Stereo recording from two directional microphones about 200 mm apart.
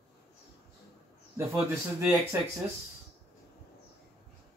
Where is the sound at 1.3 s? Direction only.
10° right (ahead or behind).